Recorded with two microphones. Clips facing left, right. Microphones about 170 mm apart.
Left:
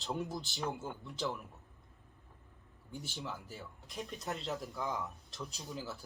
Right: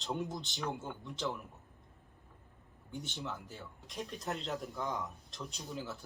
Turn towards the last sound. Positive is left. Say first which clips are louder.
# right 1 dB
turn(degrees=0)  # may be behind; listen again after turning